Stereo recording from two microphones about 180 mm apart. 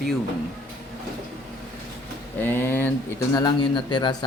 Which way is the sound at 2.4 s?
10° left (ahead or behind).